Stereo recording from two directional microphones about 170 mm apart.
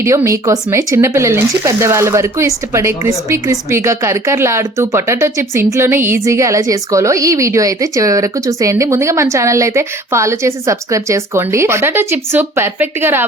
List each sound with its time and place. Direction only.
0.0 s speech: 15° right (ahead or behind)